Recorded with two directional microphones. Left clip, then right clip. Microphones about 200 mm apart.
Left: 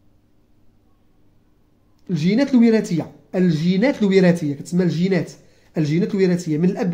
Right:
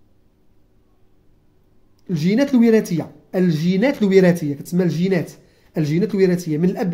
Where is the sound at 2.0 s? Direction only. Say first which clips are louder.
Right 1 dB; 10° right (ahead or behind).